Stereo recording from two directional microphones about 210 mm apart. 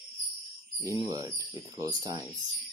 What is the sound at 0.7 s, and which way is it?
Speech, 15° right (ahead or behind).